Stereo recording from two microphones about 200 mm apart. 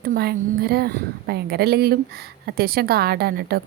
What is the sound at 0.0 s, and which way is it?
A woman's voice, 50° right (ahead or behind).